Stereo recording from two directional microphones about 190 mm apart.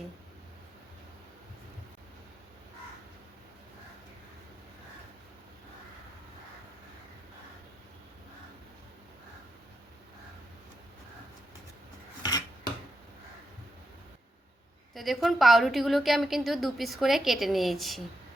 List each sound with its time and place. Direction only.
12.2 s filing: 20° left (ahead or behind)
14.9 s a woman's voice: centre (ahead or behind)